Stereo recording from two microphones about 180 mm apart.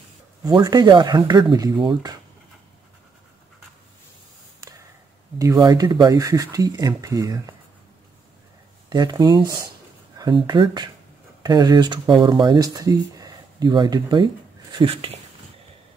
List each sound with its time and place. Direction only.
0.4 s speech: 20° right (ahead or behind)
5.4 s speech: 20° right (ahead or behind)
8.8 s speech: 20° right (ahead or behind)